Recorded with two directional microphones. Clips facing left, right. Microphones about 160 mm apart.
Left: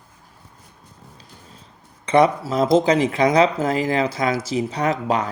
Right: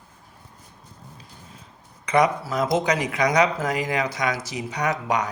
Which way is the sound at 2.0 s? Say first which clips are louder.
Left 4 dB; 30° left (ahead or behind).